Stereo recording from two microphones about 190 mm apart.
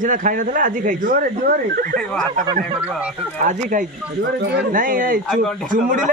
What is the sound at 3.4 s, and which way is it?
Speech, 40° right (ahead or behind).